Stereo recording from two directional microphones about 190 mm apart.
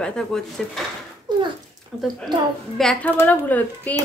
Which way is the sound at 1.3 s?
25° right (ahead or behind).